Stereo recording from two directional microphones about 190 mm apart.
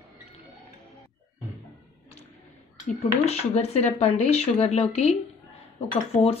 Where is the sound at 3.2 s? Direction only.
35° left (ahead or behind).